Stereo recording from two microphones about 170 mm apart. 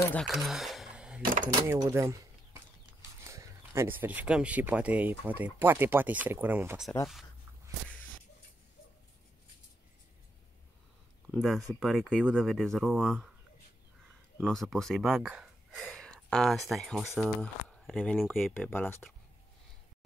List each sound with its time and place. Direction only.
0.0 s speech: 10° left (ahead or behind)
0.3 s a sound: centre (ahead or behind)
1.7 s a sound: 15° right (ahead or behind)
3.3 s speech: 15° right (ahead or behind)
11.2 s speech: 5° right (ahead or behind)
14.4 s speech: 5° left (ahead or behind)